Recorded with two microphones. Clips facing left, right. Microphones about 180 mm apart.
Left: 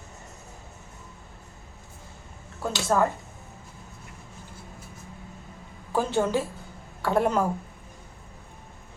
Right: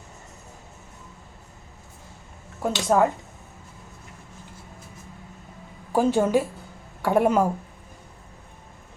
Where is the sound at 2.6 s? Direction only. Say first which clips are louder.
Right 4 dB; 15° right (ahead or behind).